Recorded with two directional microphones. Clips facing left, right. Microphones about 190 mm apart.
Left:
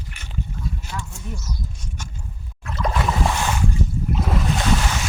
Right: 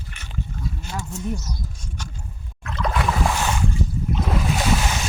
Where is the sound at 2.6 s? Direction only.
5° left (ahead or behind).